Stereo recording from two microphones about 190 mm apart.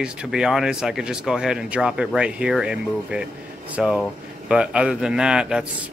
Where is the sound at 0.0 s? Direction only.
5° right (ahead or behind).